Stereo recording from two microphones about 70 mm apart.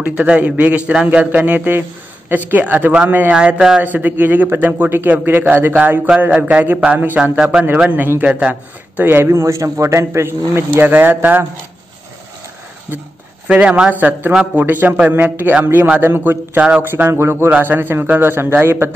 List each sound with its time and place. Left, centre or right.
0.0 s a man's voice: centre
3.3 s speech: centre
3.8 s a man's voice: right
6.0 s a man's voice: centre
7.3 s speech: centre
7.9 s a man's voice: right
13.5 s a man's voice: centre; by 17.5 s right
17.5 s a man's voice: right